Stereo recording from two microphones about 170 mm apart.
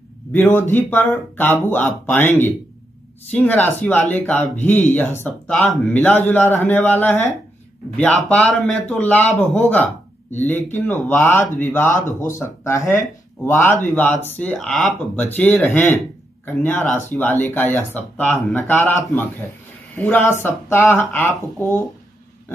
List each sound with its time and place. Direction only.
0.3 s speech: 10° left (ahead or behind)